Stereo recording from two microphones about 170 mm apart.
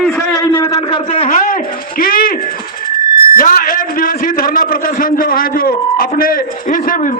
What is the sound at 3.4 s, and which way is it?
A man's voice, 55° left (ahead or behind).